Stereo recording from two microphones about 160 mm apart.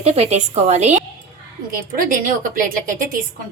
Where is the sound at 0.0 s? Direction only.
40° right (ahead or behind).